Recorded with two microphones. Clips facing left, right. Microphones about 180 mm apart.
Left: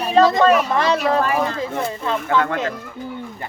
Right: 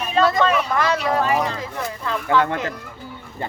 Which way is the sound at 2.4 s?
20° right (ahead or behind).